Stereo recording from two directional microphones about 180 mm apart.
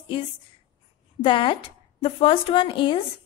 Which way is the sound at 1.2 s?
25° left (ahead or behind).